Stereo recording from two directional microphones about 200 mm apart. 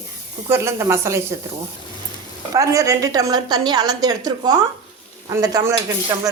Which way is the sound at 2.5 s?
15° right (ahead or behind).